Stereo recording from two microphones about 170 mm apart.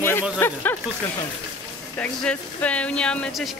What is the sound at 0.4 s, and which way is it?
Speech, 15° left (ahead or behind).